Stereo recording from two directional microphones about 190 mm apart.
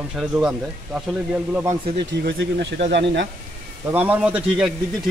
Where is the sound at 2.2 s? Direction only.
60° right (ahead or behind).